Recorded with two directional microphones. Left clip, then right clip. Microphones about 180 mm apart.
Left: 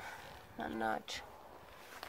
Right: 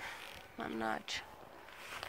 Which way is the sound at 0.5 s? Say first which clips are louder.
Left 1 dB; 10° left (ahead or behind).